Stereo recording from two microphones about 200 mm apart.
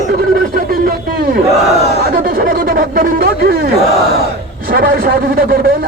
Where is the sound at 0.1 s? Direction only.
50° right (ahead or behind).